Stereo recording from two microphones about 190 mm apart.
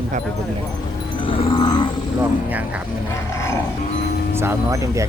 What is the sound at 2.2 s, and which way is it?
Speech, 10° right (ahead or behind).